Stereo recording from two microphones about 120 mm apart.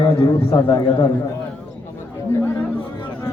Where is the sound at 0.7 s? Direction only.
40° left (ahead or behind).